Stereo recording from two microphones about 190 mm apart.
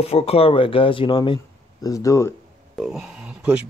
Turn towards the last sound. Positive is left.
turn(degrees=-5)  # may be behind; listen again after turning